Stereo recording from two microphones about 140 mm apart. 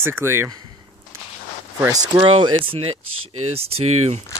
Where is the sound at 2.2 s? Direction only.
40° right (ahead or behind).